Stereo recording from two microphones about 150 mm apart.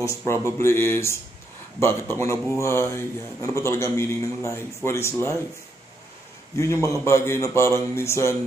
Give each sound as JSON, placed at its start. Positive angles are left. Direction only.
{"t": 0.0, "sound": "speech", "side_deg": 20}
{"t": 6.5, "sound": "speech", "side_deg": 20}